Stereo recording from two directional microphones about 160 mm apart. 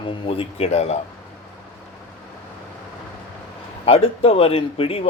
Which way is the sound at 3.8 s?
35° left (ahead or behind).